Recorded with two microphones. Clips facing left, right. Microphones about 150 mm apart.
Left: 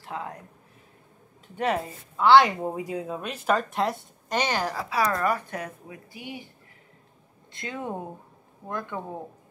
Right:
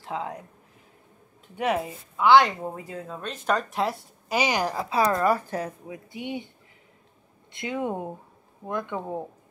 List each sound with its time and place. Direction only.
0.0 s speech: 15° right (ahead or behind)
1.6 s speech: 5° right (ahead or behind)
2.4 s speech: 15° left (ahead or behind); by 4.8 s 15° right (ahead or behind)
4.8 s speech: 25° right (ahead or behind)
7.5 s speech: 15° right (ahead or behind)